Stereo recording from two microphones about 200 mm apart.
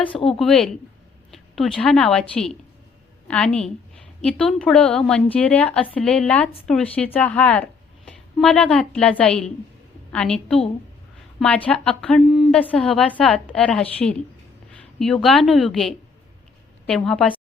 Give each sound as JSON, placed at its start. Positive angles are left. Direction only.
{"t": 0.1, "sound": "a woman's voice", "side_deg": 25}
{"t": 0.3, "sound": "a woman's voice", "side_deg": 5}